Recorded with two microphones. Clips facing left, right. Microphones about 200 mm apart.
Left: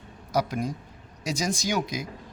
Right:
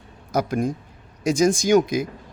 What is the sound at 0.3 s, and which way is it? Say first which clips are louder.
A man's voice: right 4 dB; 50° right (ahead or behind).